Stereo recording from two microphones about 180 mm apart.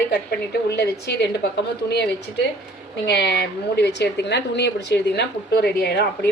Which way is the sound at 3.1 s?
65° left (ahead or behind).